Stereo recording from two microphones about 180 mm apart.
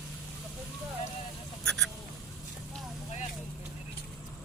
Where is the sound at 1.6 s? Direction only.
5° left (ahead or behind).